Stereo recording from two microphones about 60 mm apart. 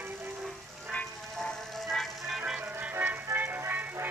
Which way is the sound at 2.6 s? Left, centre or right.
Right.